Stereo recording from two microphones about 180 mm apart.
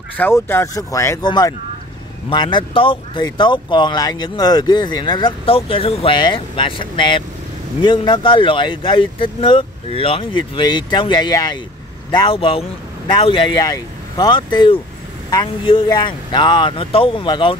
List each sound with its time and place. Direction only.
0.2 s speech: 15° left (ahead or behind); by 17.6 s 30° left (ahead or behind)